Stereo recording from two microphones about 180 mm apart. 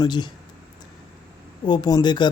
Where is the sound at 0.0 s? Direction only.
25° left (ahead or behind).